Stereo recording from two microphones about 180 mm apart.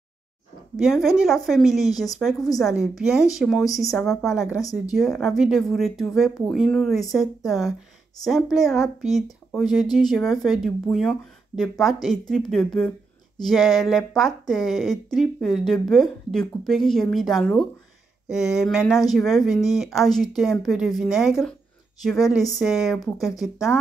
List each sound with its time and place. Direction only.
0.7 s speech: centre (ahead or behind)
4.6 s speech: 20° left (ahead or behind)
4.9 s speech: centre (ahead or behind)